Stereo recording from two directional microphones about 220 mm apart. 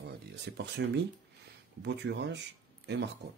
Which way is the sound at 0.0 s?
50° right (ahead or behind).